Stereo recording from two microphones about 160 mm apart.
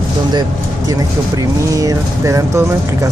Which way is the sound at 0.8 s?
20° right (ahead or behind).